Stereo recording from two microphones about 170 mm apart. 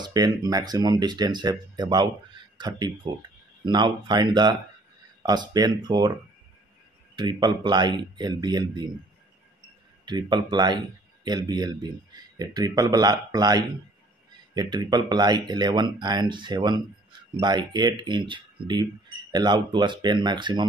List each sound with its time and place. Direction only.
0.0 s speech: 20° right (ahead or behind)
7.2 s speech: 25° right (ahead or behind)
10.0 s speech: 25° right (ahead or behind)